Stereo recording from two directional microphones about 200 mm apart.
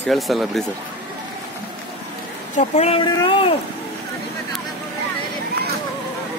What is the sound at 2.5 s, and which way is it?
Speech, 35° left (ahead or behind).